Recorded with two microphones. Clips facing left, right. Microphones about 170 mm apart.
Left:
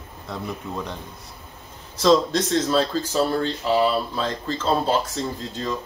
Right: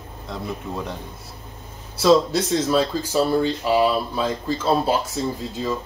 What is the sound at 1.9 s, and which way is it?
Speech, 10° right (ahead or behind).